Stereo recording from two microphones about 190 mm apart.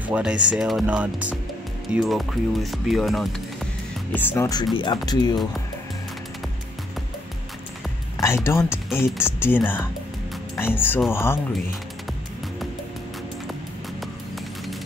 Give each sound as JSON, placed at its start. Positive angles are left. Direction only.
{"t": 0.1, "sound": "speech", "side_deg": -5}
{"t": 4.1, "sound": "speech", "side_deg": 10}
{"t": 8.5, "sound": "speech", "side_deg": 15}